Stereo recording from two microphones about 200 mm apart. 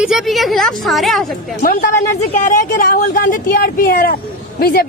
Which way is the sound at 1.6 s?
45° left (ahead or behind).